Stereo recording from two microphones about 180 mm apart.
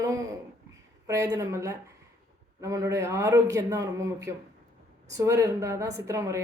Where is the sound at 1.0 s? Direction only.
20° right (ahead or behind).